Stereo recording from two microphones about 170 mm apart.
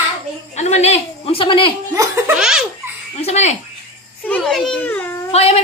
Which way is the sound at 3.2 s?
40° left (ahead or behind).